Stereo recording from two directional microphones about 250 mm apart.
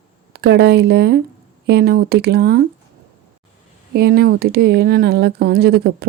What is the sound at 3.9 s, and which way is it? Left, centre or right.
Speech, right.